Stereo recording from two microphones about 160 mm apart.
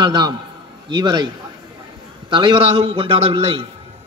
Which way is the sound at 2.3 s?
30° right (ahead or behind).